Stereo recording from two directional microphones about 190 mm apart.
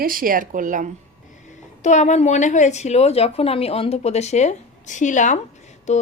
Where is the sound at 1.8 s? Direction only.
40° left (ahead or behind).